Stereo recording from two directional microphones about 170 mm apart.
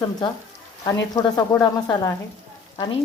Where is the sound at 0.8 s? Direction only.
20° left (ahead or behind).